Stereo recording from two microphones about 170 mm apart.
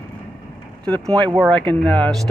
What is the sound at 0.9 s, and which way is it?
Speech, 25° right (ahead or behind).